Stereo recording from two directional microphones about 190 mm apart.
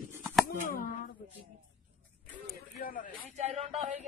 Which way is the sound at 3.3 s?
35° right (ahead or behind).